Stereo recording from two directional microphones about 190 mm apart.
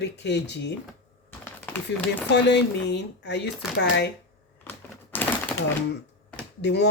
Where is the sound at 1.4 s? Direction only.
10° left (ahead or behind).